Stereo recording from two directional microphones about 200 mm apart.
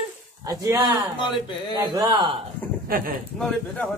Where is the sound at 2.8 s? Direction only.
45° right (ahead or behind).